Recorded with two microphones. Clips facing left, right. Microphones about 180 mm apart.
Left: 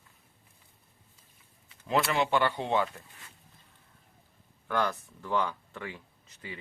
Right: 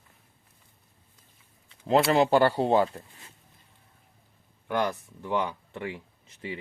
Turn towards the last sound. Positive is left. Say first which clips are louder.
# right 7 dB
turn(degrees=-25)  # may be behind; listen again after turning